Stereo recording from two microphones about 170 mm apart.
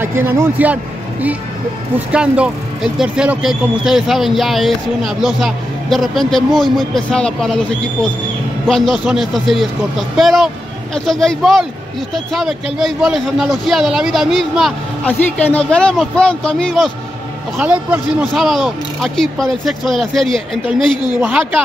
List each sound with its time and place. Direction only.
0.0 s a man's voice: 15° right (ahead or behind)
2.1 s speech: 5° right (ahead or behind)
17.6 s a man's voice: 10° right (ahead or behind)
20.6 s a woman's voice: 25° left (ahead or behind)
21.2 s a man's voice: 10° right (ahead or behind)